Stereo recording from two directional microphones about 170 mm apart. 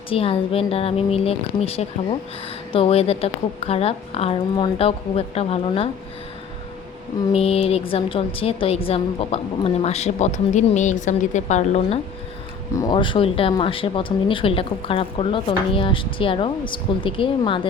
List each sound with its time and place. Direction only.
0.1 s speech: 35° left (ahead or behind)
7.3 s speech: 35° left (ahead or behind)
12.7 s speech: 25° left (ahead or behind)